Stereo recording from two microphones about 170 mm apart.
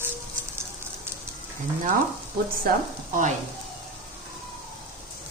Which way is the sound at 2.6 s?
50° right (ahead or behind).